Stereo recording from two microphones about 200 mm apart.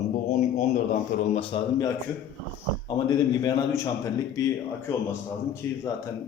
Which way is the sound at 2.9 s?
20° left (ahead or behind).